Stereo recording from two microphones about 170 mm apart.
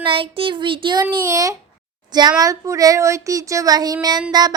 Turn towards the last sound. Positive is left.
turn(degrees=-25)  # may be behind; listen again after turning